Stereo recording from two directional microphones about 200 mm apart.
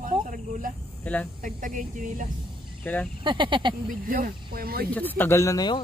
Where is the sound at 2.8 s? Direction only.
5° left (ahead or behind).